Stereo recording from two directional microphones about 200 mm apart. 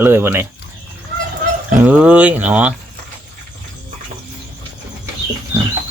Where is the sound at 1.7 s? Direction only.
5° right (ahead or behind).